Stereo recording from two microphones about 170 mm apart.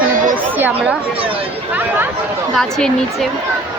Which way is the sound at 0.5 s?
10° right (ahead or behind).